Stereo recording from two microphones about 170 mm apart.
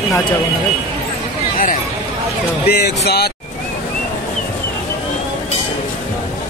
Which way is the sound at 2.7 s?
70° left (ahead or behind).